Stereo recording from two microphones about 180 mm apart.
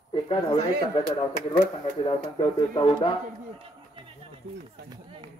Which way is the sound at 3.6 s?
30° right (ahead or behind).